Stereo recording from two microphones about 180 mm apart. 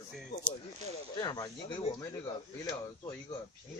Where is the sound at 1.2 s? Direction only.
20° left (ahead or behind).